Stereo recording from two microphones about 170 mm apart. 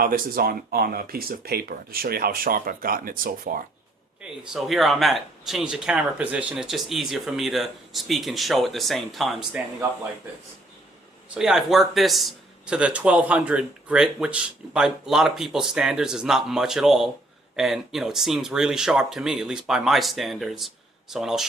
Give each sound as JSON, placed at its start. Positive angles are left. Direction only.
{"t": 0.0, "sound": "speech", "side_deg": -60}
{"t": 4.2, "sound": "speech", "side_deg": 0}
{"t": 11.3, "sound": "speech", "side_deg": -5}